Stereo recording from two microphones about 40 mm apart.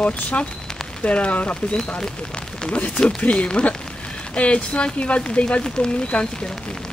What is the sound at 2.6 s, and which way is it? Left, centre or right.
Speech, left.